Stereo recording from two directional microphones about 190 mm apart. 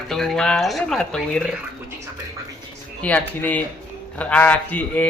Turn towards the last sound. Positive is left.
turn(degrees=10)  # may be behind; listen again after turning